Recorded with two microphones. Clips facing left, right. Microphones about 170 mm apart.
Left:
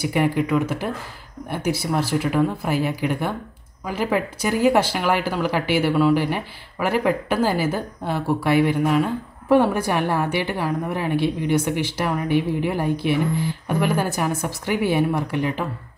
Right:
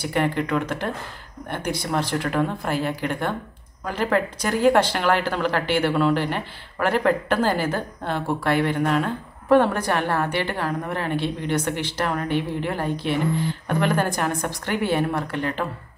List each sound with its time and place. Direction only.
0.0 s speech: 10° left (ahead or behind)